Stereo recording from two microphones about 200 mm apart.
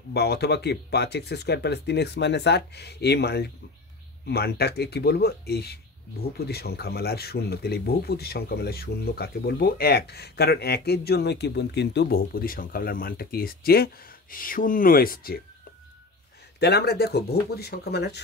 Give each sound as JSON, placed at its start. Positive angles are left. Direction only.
{"t": 0.1, "sound": "speech", "side_deg": 55}
{"t": 16.5, "sound": "speech", "side_deg": 55}